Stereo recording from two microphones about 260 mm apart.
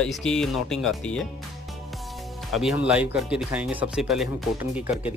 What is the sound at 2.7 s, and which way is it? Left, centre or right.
Speech, centre.